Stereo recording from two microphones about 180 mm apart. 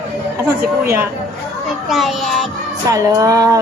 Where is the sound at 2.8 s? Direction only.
20° right (ahead or behind).